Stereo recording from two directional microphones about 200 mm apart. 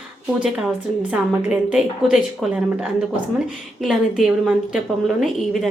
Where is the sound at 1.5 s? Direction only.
5° right (ahead or behind).